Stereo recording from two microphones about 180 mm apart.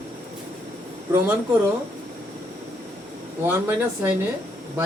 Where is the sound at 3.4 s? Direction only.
10° right (ahead or behind).